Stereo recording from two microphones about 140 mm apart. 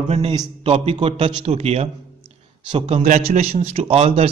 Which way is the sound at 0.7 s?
45° right (ahead or behind).